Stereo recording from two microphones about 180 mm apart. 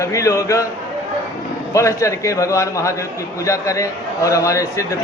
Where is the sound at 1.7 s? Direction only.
15° left (ahead or behind).